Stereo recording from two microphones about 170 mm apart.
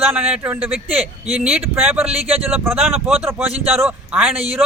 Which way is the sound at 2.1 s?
35° right (ahead or behind).